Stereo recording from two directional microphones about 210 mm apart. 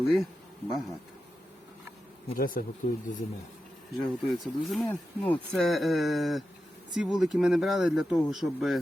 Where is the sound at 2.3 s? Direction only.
45° left (ahead or behind).